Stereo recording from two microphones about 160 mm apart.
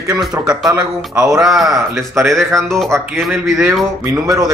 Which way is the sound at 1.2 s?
5° right (ahead or behind).